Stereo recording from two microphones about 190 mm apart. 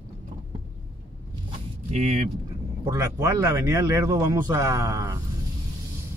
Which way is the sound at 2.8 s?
15° right (ahead or behind).